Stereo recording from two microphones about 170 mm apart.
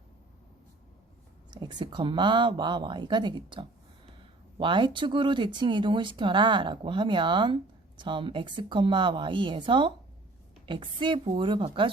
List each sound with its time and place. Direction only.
1.5 s speech: 25° right (ahead or behind)